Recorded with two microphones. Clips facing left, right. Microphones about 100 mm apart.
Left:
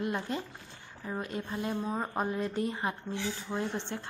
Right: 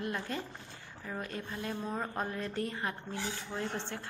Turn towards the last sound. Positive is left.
turn(degrees=20)  # may be behind; listen again after turning